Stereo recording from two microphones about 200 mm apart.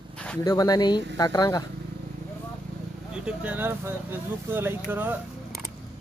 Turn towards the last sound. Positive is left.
turn(degrees=-10)  # may be behind; listen again after turning